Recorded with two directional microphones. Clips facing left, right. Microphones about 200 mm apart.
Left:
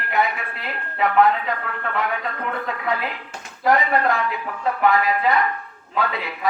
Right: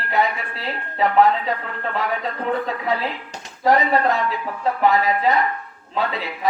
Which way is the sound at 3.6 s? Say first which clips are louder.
Right 2 dB; 25° right (ahead or behind).